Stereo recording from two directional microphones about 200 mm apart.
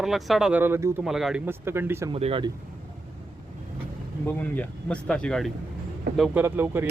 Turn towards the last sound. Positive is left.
turn(degrees=-10)  # may be behind; listen again after turning